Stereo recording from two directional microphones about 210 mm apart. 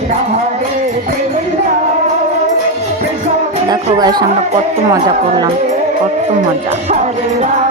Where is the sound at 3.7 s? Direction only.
20° right (ahead or behind).